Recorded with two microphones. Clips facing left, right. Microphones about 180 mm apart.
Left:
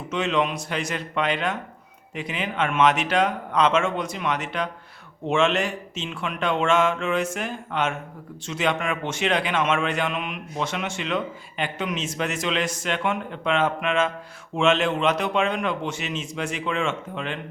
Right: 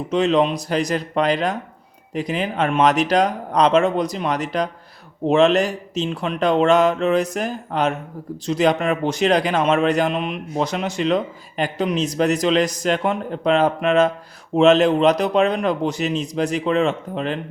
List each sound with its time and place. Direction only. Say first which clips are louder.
0.1 s a man's voice: right 6 dB; 35° right (ahead or behind)